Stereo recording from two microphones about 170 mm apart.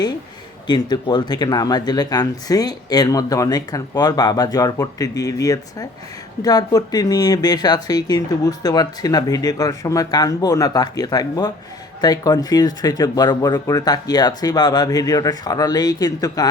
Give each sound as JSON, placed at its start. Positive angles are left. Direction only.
{"t": 0.7, "sound": "speech", "side_deg": 25}